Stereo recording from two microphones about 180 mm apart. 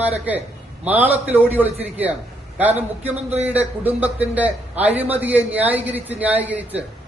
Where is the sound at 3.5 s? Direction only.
10° right (ahead or behind).